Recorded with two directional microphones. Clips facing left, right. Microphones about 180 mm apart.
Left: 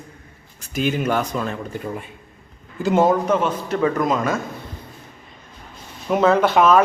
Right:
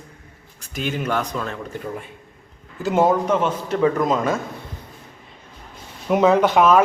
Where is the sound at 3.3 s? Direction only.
10° left (ahead or behind).